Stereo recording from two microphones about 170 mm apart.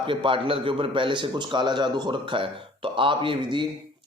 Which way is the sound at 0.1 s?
30° right (ahead or behind).